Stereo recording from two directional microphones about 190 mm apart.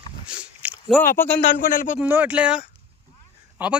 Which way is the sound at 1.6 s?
45° left (ahead or behind).